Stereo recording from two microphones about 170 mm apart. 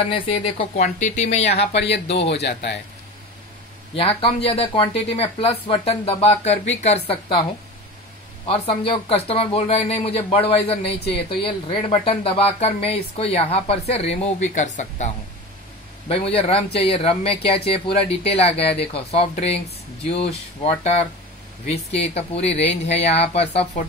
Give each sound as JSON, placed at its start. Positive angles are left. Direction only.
{"t": 0.1, "sound": "speech", "side_deg": 30}
{"t": 0.7, "sound": "speech", "side_deg": 45}
{"t": 2.3, "sound": "speech", "side_deg": 80}
{"t": 3.9, "sound": "speech", "side_deg": 35}
{"t": 8.5, "sound": "speech", "side_deg": 35}
{"t": 16.1, "sound": "speech", "side_deg": 35}
{"t": 22.1, "sound": "speech", "side_deg": 35}